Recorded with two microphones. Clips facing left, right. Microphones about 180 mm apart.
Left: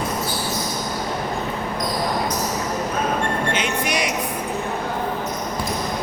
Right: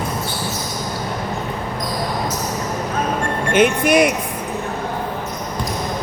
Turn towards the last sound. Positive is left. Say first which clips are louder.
# right 9 dB
turn(degrees=-55)  # may be behind; listen again after turning